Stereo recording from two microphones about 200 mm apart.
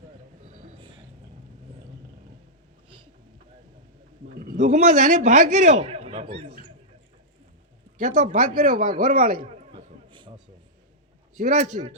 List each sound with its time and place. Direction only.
4.4 s a man's voice: 40° right (ahead or behind)
7.9 s a man's voice: 40° right (ahead or behind)
9.7 s a sound: 25° right (ahead or behind)
11.3 s a man's voice: 35° right (ahead or behind)